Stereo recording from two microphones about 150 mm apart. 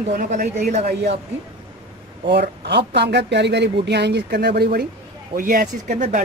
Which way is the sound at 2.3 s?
90° right.